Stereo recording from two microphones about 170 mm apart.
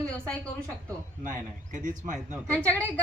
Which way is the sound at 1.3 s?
50° right (ahead or behind).